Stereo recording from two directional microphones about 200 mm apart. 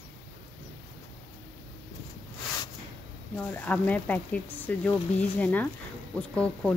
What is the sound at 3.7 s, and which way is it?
Speech, 5° left (ahead or behind).